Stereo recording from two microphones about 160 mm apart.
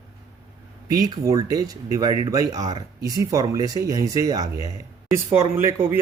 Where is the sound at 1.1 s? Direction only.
25° right (ahead or behind).